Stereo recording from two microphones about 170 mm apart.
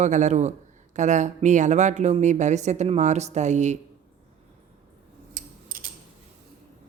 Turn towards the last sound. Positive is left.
turn(degrees=-55)  # may be behind; listen again after turning